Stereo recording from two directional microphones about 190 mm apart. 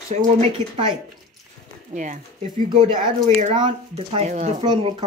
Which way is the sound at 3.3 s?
25° right (ahead or behind).